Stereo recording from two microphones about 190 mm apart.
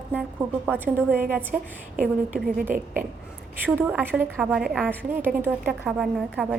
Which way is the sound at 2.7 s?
45° right (ahead or behind).